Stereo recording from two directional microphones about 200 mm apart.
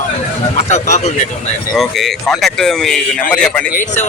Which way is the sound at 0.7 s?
35° left (ahead or behind).